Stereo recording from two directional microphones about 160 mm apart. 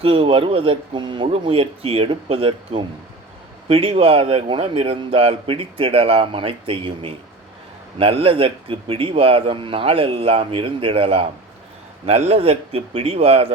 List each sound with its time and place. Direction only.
0.0 s a man's voice: 35° right (ahead or behind)